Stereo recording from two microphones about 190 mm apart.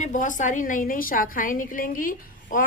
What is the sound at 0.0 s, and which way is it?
A woman's voice, 40° left (ahead or behind).